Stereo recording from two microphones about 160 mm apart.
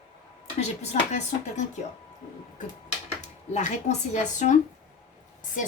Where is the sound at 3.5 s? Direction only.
45° left (ahead or behind).